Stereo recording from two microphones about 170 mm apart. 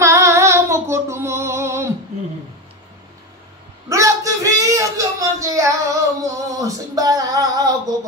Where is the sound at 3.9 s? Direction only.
20° right (ahead or behind).